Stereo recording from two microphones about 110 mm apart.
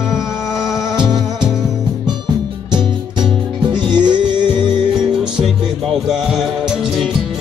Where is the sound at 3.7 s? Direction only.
40° right (ahead or behind).